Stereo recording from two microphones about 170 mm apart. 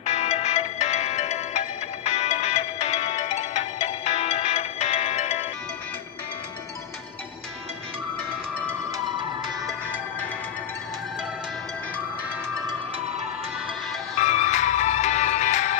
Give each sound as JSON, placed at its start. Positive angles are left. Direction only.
{"t": 0.0, "sound": "music", "side_deg": 40}
{"t": 8.9, "sound": "music", "side_deg": -20}
{"t": 14.2, "sound": "music", "side_deg": 45}